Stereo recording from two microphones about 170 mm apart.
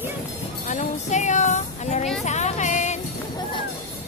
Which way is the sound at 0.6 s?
45° left (ahead or behind).